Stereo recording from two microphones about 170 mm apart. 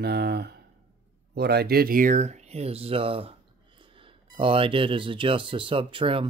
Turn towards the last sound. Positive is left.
turn(degrees=-30)  # may be behind; listen again after turning